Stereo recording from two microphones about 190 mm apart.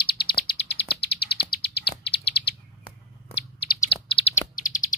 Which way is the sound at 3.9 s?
30° left (ahead or behind).